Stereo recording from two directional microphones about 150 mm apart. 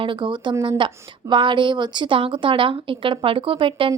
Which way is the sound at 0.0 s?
35° right (ahead or behind).